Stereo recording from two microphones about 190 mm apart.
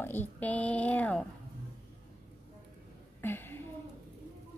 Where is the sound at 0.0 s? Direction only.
10° left (ahead or behind).